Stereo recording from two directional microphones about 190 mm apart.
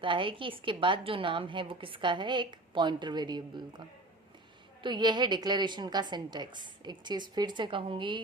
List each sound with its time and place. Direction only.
0.0 s a woman's voice: 25° right (ahead or behind)
4.8 s a woman's voice: 25° right (ahead or behind)